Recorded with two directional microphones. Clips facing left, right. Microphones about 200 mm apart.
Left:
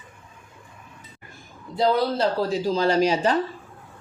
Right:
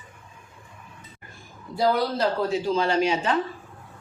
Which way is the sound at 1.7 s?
30° left (ahead or behind).